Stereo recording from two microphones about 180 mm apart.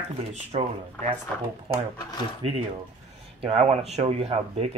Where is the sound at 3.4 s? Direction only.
35° right (ahead or behind).